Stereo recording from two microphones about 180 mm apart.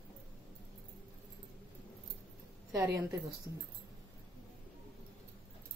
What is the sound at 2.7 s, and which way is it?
Speech, 20° right (ahead or behind).